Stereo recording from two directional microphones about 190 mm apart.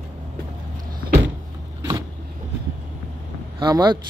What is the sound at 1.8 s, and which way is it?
Vehicle, 15° right (ahead or behind).